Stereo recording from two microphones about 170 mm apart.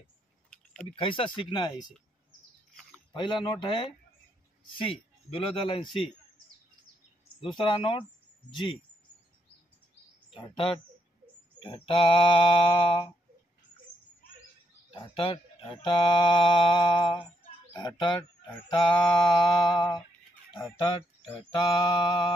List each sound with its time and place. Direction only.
0.9 s speech: 30° left (ahead or behind)
3.1 s speech: 25° left (ahead or behind)
7.3 s speech: 30° left (ahead or behind)
10.3 s speech: 30° left (ahead or behind)
14.9 s speech: 30° left (ahead or behind)
18.9 s mantra: 5° left (ahead or behind)
20.7 s speech: 25° left (ahead or behind)